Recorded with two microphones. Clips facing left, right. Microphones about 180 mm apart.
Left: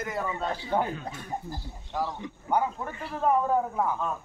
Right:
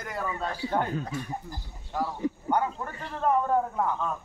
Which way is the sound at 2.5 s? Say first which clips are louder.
Left 4 dB; 5° left (ahead or behind).